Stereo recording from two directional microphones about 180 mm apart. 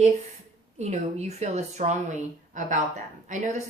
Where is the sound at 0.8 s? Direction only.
40° right (ahead or behind).